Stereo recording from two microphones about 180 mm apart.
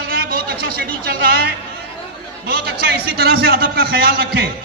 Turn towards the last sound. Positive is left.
turn(degrees=-60)  # may be behind; listen again after turning